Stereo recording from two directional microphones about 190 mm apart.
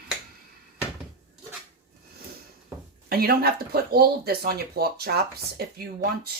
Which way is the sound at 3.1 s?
55° right (ahead or behind).